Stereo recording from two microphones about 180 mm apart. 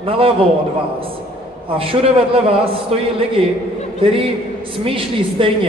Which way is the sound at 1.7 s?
30° right (ahead or behind).